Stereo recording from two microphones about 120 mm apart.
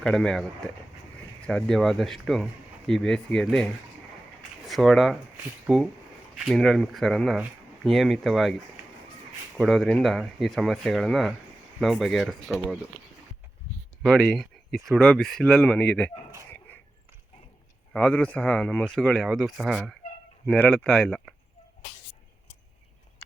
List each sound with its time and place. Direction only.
0.0 s speech: 5° left (ahead or behind)
1.5 s speech: 5° left (ahead or behind)
9.6 s speech: centre (ahead or behind)
14.0 s speech: centre (ahead or behind)
16.5 s a sound: 15° left (ahead or behind)
17.9 s speech: 10° left (ahead or behind)